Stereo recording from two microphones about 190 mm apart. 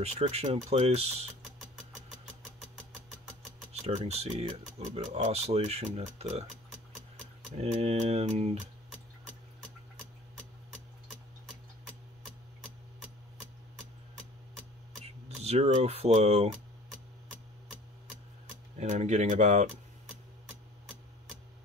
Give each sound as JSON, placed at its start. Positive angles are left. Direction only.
{"t": 0.0, "sound": "speech", "side_deg": -35}
{"t": 3.8, "sound": "speech", "side_deg": -35}
{"t": 7.6, "sound": "speech", "side_deg": -35}
{"t": 15.2, "sound": "speech", "side_deg": -35}
{"t": 18.8, "sound": "speech", "side_deg": -35}